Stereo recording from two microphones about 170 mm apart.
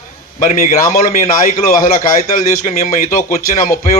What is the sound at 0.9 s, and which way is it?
A man's voice, 50° left (ahead or behind).